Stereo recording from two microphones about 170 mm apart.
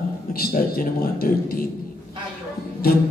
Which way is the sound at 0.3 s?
60° left (ahead or behind).